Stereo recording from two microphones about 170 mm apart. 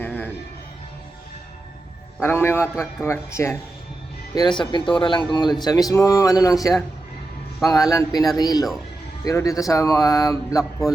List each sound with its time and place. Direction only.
0.0 s music: 10° left (ahead or behind)
2.2 s a man's voice: 15° left (ahead or behind)
4.4 s speech: 25° left (ahead or behind)